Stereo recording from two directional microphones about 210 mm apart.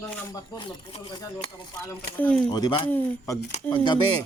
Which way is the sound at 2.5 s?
20° left (ahead or behind).